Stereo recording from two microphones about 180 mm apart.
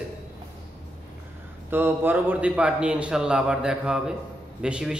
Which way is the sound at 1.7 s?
10° right (ahead or behind).